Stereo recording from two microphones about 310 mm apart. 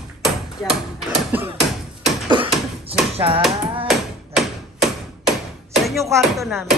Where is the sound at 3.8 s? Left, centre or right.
Centre.